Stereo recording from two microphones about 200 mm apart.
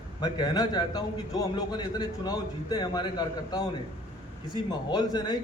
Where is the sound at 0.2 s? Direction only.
20° left (ahead or behind).